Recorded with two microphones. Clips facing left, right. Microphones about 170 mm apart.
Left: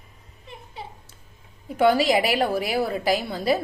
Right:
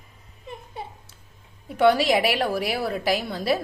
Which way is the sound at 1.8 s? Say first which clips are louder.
Even; centre (ahead or behind).